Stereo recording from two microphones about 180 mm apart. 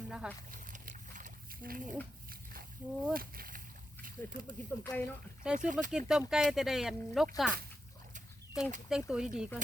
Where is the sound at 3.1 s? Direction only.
55° right (ahead or behind).